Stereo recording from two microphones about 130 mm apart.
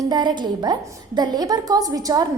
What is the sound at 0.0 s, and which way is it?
A woman's voice, 35° right (ahead or behind).